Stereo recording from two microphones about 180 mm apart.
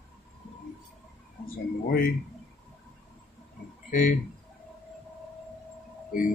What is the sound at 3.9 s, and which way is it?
Speech, 45° left (ahead or behind).